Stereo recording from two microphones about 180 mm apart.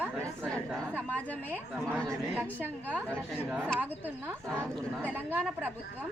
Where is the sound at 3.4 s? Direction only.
5° right (ahead or behind).